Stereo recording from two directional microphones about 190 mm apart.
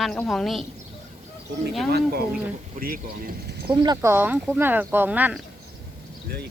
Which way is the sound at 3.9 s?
10° right (ahead or behind).